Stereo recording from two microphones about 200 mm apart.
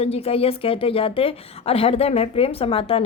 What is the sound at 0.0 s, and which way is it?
Speech, 30° left (ahead or behind).